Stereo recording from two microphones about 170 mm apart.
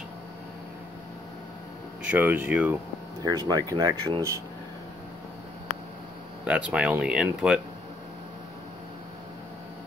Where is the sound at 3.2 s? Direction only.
25° right (ahead or behind).